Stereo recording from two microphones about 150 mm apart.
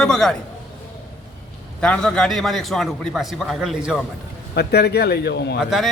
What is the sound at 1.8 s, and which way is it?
A man's voice, 5° left (ahead or behind).